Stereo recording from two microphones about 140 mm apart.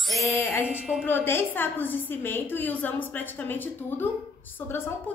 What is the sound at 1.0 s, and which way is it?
A woman's voice, 15° left (ahead or behind).